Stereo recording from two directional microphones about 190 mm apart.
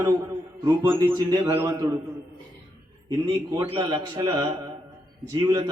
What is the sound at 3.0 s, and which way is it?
A man's voice, 20° right (ahead or behind).